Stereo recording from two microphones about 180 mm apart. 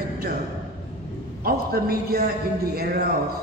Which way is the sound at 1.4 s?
55° right (ahead or behind).